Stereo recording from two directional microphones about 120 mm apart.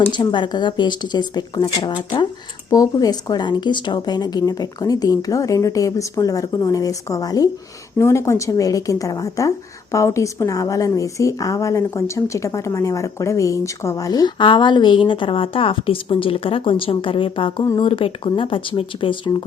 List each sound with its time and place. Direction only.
0.1 s a woman's voice: 40° left (ahead or behind)